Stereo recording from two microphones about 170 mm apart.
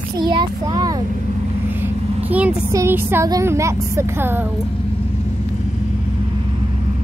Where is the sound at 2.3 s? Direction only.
10° right (ahead or behind).